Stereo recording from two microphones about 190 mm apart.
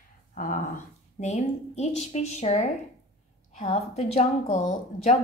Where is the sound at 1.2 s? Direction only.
35° left (ahead or behind).